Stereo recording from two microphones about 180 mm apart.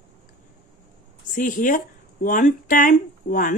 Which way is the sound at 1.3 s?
45° left (ahead or behind).